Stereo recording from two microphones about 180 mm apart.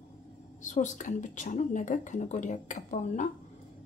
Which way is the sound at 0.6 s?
45° left (ahead or behind).